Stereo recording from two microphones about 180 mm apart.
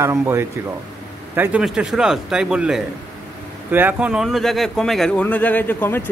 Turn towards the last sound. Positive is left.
turn(degrees=10)  # may be behind; listen again after turning